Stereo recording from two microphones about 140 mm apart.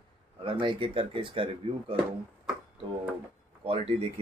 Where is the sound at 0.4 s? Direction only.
35° right (ahead or behind).